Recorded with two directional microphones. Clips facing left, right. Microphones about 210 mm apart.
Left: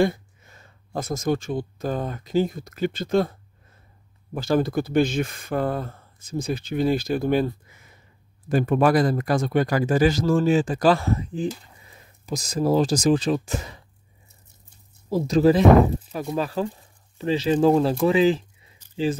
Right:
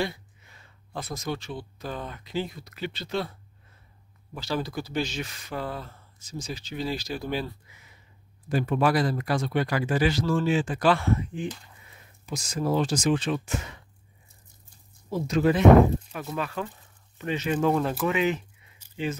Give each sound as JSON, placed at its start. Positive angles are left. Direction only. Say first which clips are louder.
{"t": 0.0, "sound": "speech", "louder": "left 9 dB", "side_deg": 45}
{"t": 15.0, "sound": "speech", "louder": "left 6 dB", "side_deg": 35}